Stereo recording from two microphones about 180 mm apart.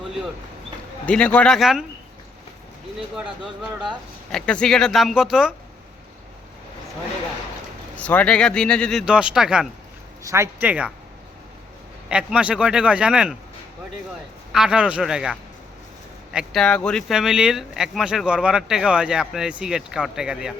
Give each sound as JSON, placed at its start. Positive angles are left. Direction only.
{"t": 0.0, "sound": "a sound", "side_deg": 0}
{"t": 1.0, "sound": "speech", "side_deg": 5}
{"t": 3.2, "sound": "speech", "side_deg": -5}
{"t": 7.9, "sound": "speech", "side_deg": 5}
{"t": 10.2, "sound": "speech", "side_deg": -15}
{"t": 12.0, "sound": "speech", "side_deg": -5}
{"t": 14.5, "sound": "speech", "side_deg": -5}